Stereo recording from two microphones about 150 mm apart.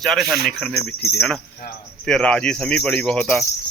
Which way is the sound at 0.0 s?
Centre (ahead or behind).